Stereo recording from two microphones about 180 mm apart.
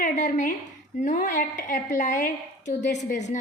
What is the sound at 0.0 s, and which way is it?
A woman's voice, 45° left (ahead or behind).